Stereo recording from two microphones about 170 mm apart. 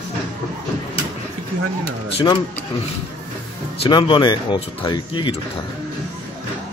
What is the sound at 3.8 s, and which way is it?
Speech, 30° left (ahead or behind).